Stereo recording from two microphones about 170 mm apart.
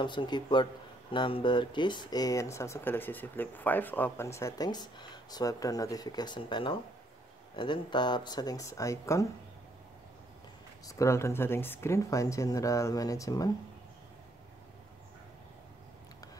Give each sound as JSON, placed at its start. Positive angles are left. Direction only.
{"t": 0.0, "sound": "speech", "side_deg": 25}
{"t": 10.9, "sound": "speech", "side_deg": 15}